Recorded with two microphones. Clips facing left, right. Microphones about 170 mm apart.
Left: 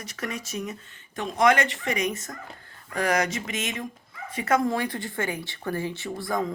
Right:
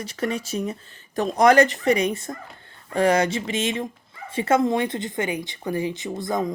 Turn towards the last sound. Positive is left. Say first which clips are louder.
# right 3 dB
turn(degrees=-20)  # may be behind; listen again after turning